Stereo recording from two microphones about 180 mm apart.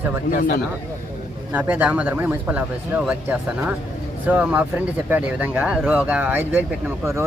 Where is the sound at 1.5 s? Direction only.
10° right (ahead or behind).